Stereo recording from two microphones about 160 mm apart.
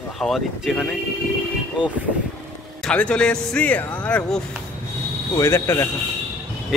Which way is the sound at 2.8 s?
5° left (ahead or behind).